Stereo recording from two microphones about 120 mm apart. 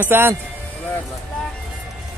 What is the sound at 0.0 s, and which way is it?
Speech, 20° right (ahead or behind).